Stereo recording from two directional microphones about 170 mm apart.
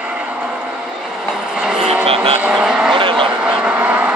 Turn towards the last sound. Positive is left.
turn(degrees=-10)  # may be behind; listen again after turning